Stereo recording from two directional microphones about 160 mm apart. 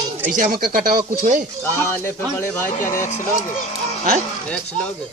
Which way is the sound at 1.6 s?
15° left (ahead or behind).